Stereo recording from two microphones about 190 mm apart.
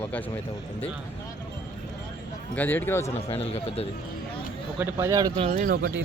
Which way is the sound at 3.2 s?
30° left (ahead or behind).